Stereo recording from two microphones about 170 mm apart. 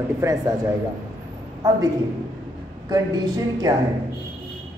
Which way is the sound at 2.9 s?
20° right (ahead or behind).